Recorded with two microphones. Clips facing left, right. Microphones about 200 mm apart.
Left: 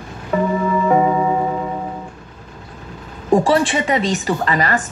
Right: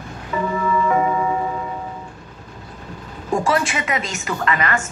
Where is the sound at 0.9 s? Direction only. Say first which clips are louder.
Left 4 dB; 30° left (ahead or behind).